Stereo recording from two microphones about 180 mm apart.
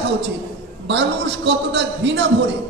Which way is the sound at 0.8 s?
75° right (ahead or behind).